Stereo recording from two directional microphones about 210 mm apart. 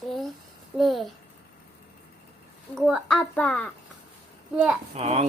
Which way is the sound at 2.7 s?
Centre (ahead or behind).